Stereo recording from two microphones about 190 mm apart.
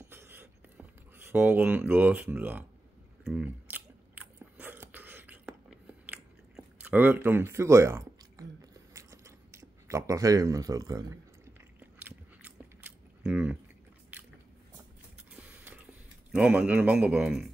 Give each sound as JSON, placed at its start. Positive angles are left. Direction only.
{"t": 0.0, "sound": "writing", "side_deg": -10}
{"t": 3.3, "sound": "biting", "side_deg": -5}
{"t": 6.5, "sound": "a sound", "side_deg": -10}
{"t": 12.0, "sound": "biting", "side_deg": -10}
{"t": 13.2, "sound": "speech", "side_deg": -5}
{"t": 15.3, "sound": "a sound", "side_deg": -5}
{"t": 16.3, "sound": "speech", "side_deg": -5}